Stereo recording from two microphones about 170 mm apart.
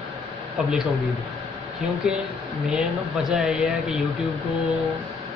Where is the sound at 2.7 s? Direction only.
Centre (ahead or behind).